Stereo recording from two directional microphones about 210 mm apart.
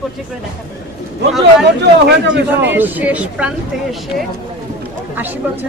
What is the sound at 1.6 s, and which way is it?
Speech, 55° right (ahead or behind).